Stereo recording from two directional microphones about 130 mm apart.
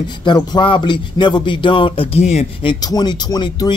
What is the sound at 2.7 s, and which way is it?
Speech, 30° left (ahead or behind).